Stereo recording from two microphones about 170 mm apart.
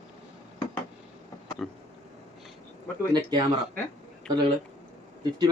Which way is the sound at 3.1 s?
25° right (ahead or behind).